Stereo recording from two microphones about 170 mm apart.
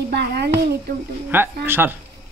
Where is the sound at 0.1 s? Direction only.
75° right (ahead or behind).